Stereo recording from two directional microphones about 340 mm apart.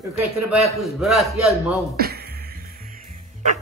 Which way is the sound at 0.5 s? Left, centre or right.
Centre.